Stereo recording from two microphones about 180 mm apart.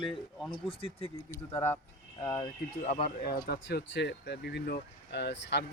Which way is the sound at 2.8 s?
35° left (ahead or behind).